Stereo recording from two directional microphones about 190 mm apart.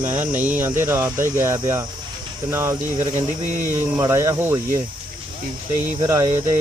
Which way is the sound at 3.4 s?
40° right (ahead or behind).